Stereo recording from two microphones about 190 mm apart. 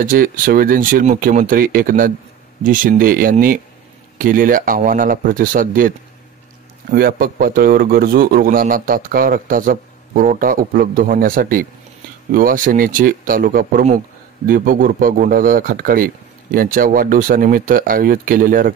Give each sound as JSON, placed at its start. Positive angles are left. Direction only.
{"t": 0.0, "sound": "a man's voice", "side_deg": -50}